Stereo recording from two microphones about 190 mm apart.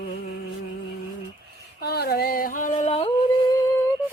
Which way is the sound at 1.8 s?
55° left (ahead or behind).